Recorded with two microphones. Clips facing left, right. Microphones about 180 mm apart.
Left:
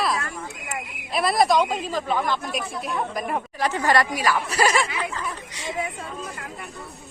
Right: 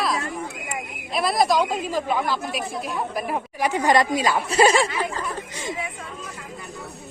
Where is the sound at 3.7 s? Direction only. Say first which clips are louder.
Right 3 dB; 15° right (ahead or behind).